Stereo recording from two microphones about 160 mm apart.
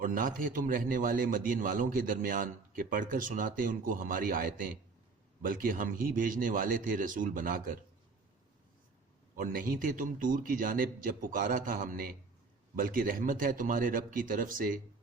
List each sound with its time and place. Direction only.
0.0 s a man's voice: 55° right (ahead or behind)
9.3 s a man's voice: 60° right (ahead or behind)